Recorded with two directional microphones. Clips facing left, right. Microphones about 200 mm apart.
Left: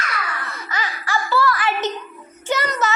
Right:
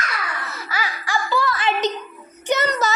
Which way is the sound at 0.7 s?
10° right (ahead or behind).